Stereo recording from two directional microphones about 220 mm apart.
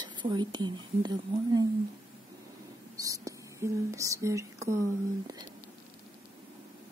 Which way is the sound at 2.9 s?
15° right (ahead or behind).